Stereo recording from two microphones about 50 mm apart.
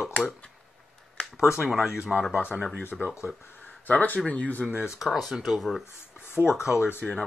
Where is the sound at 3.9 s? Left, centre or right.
Left.